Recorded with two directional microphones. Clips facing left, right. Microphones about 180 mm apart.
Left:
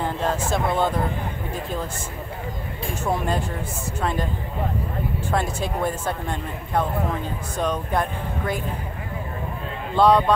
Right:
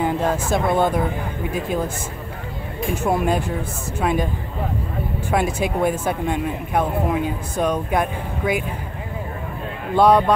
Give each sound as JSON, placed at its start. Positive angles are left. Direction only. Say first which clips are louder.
{"t": 0.0, "sound": "speech", "louder": "right 4 dB", "side_deg": -10}
{"t": 3.0, "sound": "speech", "louder": "right 4 dB", "side_deg": -15}
{"t": 5.3, "sound": "speech", "louder": "right 5 dB", "side_deg": -10}
{"t": 9.9, "sound": "speech", "louder": "right 2 dB", "side_deg": -20}